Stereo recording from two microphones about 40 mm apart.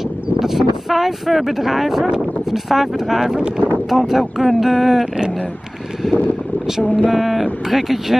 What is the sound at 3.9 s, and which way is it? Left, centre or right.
Speech, centre.